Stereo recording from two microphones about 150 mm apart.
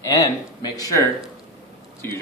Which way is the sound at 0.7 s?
25° left (ahead or behind).